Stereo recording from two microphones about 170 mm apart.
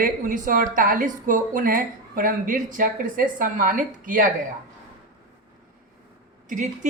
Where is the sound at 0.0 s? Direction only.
50° right (ahead or behind).